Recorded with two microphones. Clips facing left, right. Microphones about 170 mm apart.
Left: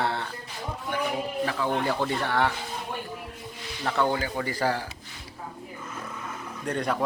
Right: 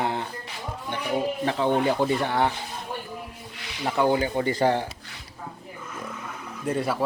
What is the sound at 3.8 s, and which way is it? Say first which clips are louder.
Speech: right 4 dB; 15° right (ahead or behind).